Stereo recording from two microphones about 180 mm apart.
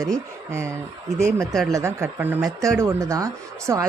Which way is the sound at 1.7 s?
15° right (ahead or behind).